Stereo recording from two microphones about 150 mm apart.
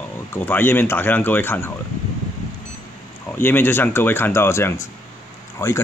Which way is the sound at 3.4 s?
15° left (ahead or behind).